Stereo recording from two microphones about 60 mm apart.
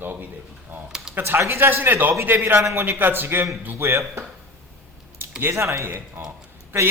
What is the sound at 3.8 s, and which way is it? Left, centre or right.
Speech, right.